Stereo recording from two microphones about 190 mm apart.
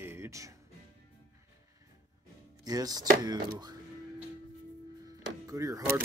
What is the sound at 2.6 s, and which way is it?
Speech, 20° right (ahead or behind).